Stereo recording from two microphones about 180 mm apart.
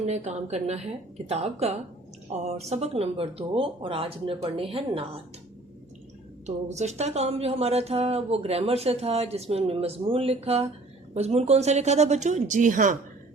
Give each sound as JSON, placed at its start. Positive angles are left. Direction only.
{"t": 0.0, "sound": "speech", "side_deg": -40}
{"t": 6.4, "sound": "speech", "side_deg": -40}